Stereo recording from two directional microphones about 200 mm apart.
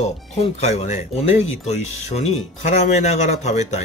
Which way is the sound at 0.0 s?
35° left (ahead or behind).